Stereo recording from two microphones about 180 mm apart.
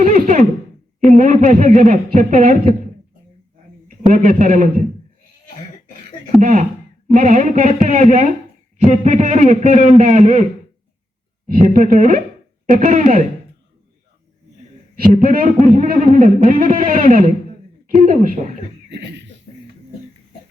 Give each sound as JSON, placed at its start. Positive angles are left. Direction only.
{"t": 0.0, "sound": "a sound", "side_deg": -45}
{"t": 1.1, "sound": "a man's voice", "side_deg": -45}
{"t": 4.1, "sound": "a man's voice", "side_deg": -45}
{"t": 6.4, "sound": "a man's voice", "side_deg": -45}
{"t": 11.4, "sound": "a man's voice", "side_deg": -50}
{"t": 14.9, "sound": "a man's voice", "side_deg": -50}
{"t": 18.9, "sound": "a sound", "side_deg": -75}